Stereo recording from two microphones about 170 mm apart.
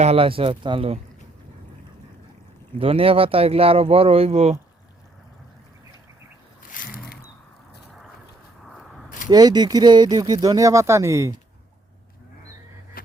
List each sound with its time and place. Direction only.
0.0 s speech: 35° right (ahead or behind)
2.7 s speech: 35° right (ahead or behind)
6.7 s boat: 55° left (ahead or behind)
8.6 s a sound: centre (ahead or behind)
9.3 s speech: 25° right (ahead or behind)